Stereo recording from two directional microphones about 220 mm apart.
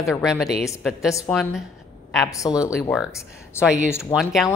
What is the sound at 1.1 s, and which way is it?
Speech, 15° left (ahead or behind).